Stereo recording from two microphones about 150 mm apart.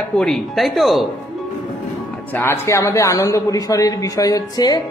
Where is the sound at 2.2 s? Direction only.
15° left (ahead or behind).